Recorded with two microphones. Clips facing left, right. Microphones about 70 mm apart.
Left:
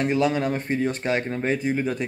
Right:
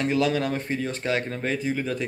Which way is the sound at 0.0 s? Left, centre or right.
Left.